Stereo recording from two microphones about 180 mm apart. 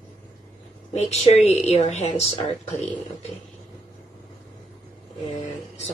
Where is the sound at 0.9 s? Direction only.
40° left (ahead or behind).